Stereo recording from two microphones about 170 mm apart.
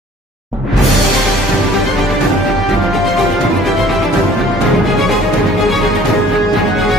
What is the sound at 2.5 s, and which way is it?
Music, centre (ahead or behind).